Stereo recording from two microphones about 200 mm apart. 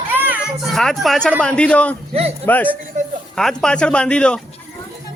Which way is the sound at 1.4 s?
5° left (ahead or behind).